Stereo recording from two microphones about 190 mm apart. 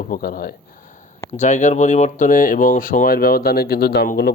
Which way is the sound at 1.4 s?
40° left (ahead or behind).